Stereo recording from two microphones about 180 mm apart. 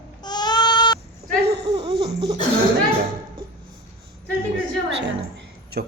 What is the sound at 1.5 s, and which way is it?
Laughter, 35° right (ahead or behind).